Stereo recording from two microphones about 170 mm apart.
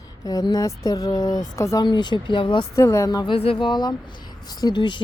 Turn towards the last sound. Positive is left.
turn(degrees=25)  # may be behind; listen again after turning